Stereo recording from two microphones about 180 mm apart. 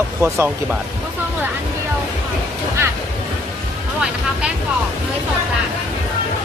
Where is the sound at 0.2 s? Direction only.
15° right (ahead or behind).